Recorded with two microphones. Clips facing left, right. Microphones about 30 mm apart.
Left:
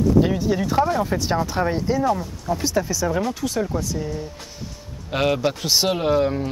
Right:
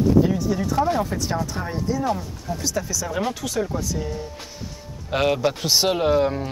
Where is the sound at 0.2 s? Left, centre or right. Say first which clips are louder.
Left 1 dB; left.